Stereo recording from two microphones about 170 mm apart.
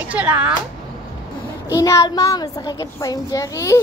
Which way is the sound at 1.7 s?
20° left (ahead or behind).